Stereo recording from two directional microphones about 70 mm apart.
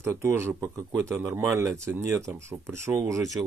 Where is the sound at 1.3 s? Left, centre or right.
Right.